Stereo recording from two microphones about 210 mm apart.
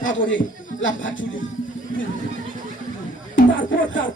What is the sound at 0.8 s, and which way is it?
Speech, 65° left (ahead or behind).